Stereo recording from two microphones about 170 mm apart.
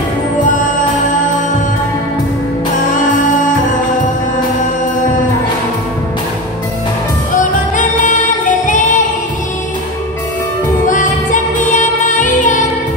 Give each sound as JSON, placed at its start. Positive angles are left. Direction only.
{"t": 7.3, "sound": "music", "side_deg": 50}
{"t": 10.9, "sound": "music", "side_deg": 50}